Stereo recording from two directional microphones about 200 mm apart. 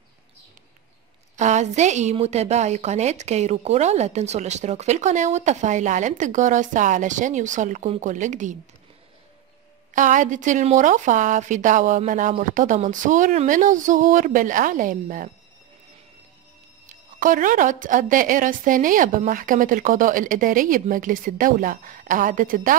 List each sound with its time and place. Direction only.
1.3 s a woman's voice: 35° right (ahead or behind)
9.9 s a woman's voice: 40° right (ahead or behind)
16.8 s a woman's voice: 40° right (ahead or behind)